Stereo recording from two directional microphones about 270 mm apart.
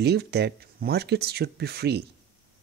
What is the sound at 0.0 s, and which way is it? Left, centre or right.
Speech, right.